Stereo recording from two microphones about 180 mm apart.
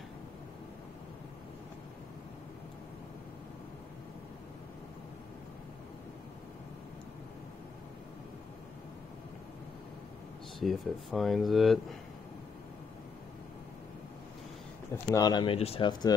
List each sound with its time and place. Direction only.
10.6 s speech: centre (ahead or behind)
15.0 s speech: 20° left (ahead or behind)